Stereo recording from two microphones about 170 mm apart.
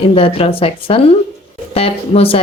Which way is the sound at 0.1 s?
35° left (ahead or behind).